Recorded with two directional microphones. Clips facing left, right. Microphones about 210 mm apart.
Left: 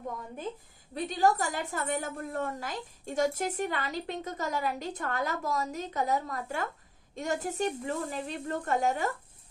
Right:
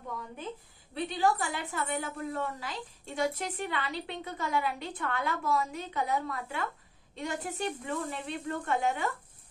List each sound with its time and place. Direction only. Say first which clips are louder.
0.9 s a woman's voice: left 2 dB; 45° left (ahead or behind)